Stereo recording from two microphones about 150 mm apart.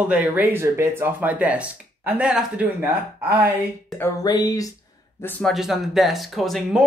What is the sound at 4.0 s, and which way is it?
Speech, 25° left (ahead or behind).